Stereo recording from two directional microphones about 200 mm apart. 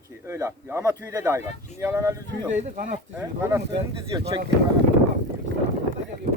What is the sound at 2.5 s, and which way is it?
Speech, 40° right (ahead or behind).